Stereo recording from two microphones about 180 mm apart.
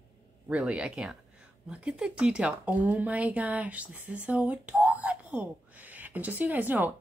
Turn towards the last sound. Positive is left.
turn(degrees=-10)  # may be behind; listen again after turning